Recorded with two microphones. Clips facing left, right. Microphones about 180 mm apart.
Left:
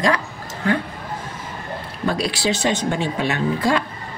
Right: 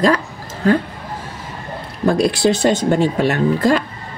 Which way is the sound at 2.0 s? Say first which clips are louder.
Right 7 dB; 50° right (ahead or behind).